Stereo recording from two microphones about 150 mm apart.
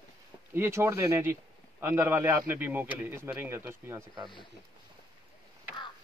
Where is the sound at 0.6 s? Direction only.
20° right (ahead or behind).